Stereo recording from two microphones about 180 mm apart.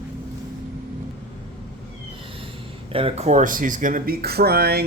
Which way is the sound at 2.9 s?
35° right (ahead or behind).